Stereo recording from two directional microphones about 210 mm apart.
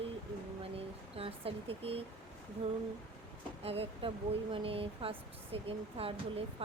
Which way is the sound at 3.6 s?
25° right (ahead or behind).